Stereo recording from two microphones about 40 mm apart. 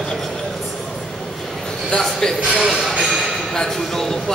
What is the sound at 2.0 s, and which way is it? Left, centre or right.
Speech, centre.